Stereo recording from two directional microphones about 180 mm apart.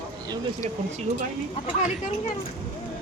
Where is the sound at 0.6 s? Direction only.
40° right (ahead or behind).